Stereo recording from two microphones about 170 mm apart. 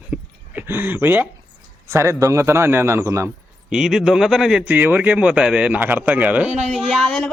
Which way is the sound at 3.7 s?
5° right (ahead or behind).